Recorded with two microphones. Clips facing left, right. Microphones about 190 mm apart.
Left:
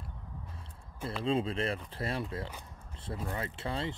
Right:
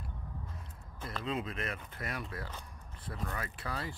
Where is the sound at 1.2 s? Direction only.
30° left (ahead or behind).